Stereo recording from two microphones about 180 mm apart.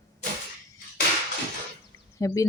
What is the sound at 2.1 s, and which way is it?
Speech, 20° left (ahead or behind).